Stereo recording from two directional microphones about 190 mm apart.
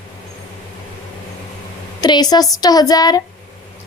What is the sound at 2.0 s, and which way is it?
A woman's voice, 20° left (ahead or behind).